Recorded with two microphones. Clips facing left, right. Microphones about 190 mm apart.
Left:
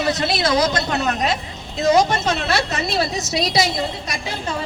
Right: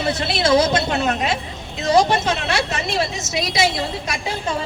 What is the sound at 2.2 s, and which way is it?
A woman's voice, 35° left (ahead or behind).